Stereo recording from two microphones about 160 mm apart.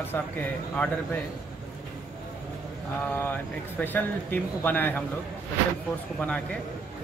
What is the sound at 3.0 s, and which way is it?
Speech, 15° left (ahead or behind).